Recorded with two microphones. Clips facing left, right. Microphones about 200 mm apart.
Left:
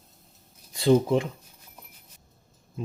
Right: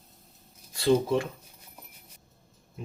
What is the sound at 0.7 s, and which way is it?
Speech, 20° left (ahead or behind).